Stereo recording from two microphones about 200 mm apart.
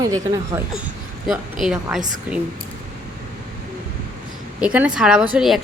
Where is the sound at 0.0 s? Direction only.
20° right (ahead or behind).